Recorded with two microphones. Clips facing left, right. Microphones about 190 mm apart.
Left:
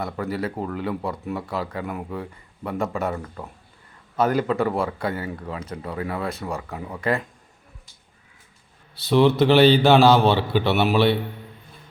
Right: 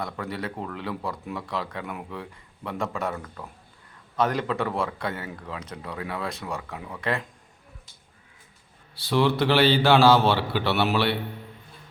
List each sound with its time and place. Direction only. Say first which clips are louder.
0.0 s speech: left 5 dB; 5° left (ahead or behind)
4.2 s speech: left 4 dB; 5° left (ahead or behind)
9.0 s a man's voice: left 5 dB; 20° left (ahead or behind)